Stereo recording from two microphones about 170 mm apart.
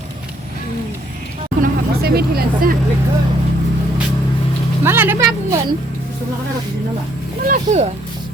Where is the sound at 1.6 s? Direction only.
65° right (ahead or behind).